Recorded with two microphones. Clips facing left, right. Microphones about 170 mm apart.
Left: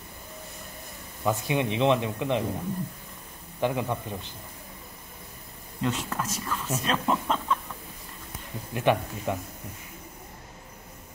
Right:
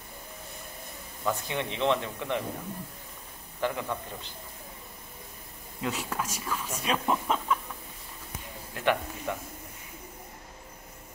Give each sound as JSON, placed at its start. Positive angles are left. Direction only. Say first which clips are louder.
{"t": 1.2, "sound": "speech", "louder": "left 5 dB", "side_deg": 15}
{"t": 3.6, "sound": "speech", "louder": "left 4 dB", "side_deg": 15}
{"t": 5.8, "sound": "speech", "louder": "left 3 dB", "side_deg": -5}
{"t": 6.8, "sound": "a sound", "louder": "left 1 dB", "side_deg": -10}
{"t": 8.7, "sound": "speech", "louder": "left 3 dB", "side_deg": 15}